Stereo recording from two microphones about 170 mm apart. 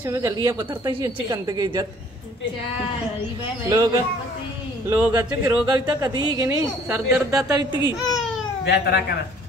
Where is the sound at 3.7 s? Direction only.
25° right (ahead or behind).